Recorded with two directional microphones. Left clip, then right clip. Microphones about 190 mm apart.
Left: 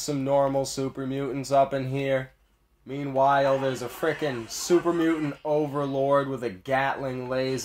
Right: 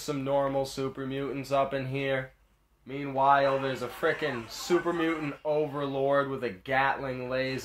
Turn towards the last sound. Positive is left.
turn(degrees=50)  # may be behind; listen again after turning